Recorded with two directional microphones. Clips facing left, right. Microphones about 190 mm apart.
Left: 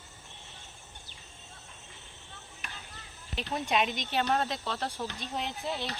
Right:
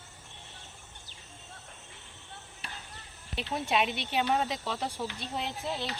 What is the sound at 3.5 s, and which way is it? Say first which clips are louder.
Speech: even; centre (ahead or behind).